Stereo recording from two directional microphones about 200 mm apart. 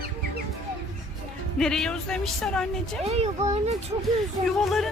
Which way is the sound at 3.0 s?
30° right (ahead or behind).